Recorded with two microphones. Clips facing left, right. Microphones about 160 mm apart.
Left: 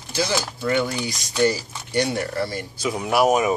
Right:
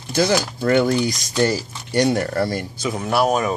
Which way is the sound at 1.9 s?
40° right (ahead or behind).